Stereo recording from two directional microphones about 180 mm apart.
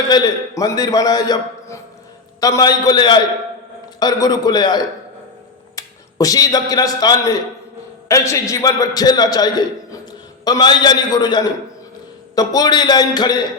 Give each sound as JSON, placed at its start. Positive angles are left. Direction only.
{"t": 0.1, "sound": "a man's voice", "side_deg": 20}